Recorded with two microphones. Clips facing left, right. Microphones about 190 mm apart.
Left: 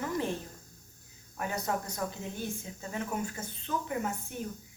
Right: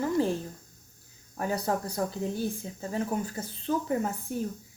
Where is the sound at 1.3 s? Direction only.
35° right (ahead or behind).